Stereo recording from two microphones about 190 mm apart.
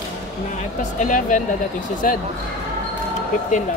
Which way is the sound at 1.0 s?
45° left (ahead or behind).